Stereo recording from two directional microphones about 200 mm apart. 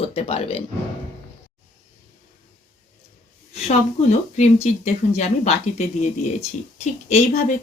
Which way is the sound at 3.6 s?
35° left (ahead or behind).